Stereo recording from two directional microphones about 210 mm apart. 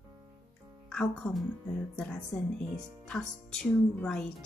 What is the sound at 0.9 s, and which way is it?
Speech, 5° left (ahead or behind).